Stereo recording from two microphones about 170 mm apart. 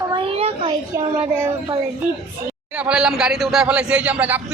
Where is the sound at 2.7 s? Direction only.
5° right (ahead or behind).